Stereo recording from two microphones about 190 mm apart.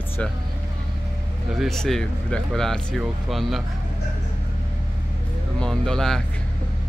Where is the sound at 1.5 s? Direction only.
Centre (ahead or behind).